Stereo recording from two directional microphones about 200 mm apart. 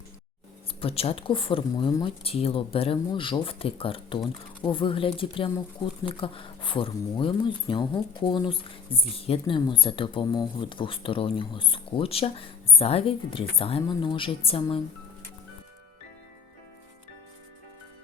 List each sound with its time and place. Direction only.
0.8 s speech: 30° left (ahead or behind)